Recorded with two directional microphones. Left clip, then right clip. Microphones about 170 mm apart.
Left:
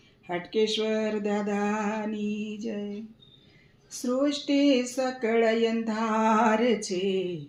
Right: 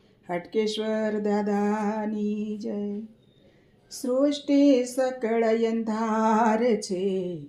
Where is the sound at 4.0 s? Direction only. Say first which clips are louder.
Right 3 dB; 30° right (ahead or behind).